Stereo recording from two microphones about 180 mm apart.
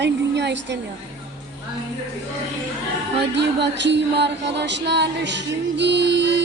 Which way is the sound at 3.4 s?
75° right (ahead or behind).